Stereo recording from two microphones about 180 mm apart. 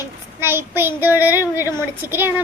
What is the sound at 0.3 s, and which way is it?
A woman's voice, 10° right (ahead or behind).